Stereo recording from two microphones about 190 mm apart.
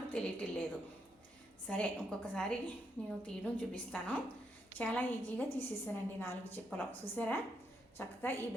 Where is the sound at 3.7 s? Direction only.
5° left (ahead or behind).